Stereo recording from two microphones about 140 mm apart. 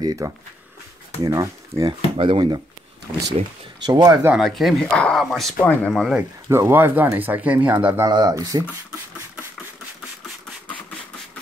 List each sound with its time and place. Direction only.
0.0 s speech: 25° right (ahead or behind)
2.1 s speech: 40° right (ahead or behind)
3.8 s speech: 30° right (ahead or behind)
4.4 s speech: centre (ahead or behind)
6.5 s speech: 15° right (ahead or behind)
8.1 s speech: 30° right (ahead or behind)